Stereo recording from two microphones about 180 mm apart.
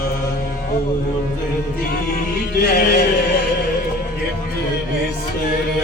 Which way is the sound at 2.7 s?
60° left (ahead or behind).